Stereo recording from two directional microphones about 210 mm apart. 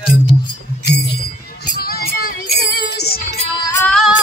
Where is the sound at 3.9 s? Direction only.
Centre (ahead or behind).